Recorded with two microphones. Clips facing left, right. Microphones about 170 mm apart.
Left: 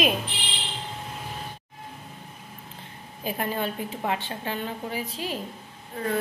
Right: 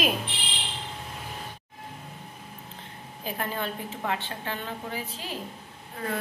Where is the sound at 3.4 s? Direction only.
20° left (ahead or behind).